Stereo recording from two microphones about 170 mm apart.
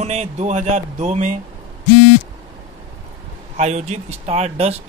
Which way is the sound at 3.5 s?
40° right (ahead or behind).